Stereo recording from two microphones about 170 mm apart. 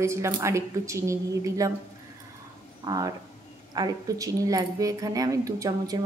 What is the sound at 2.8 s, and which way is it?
Speech, 20° right (ahead or behind).